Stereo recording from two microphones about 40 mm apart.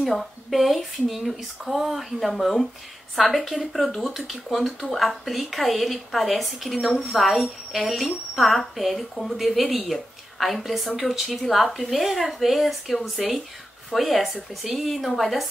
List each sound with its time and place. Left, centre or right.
0.0 s a woman's voice: centre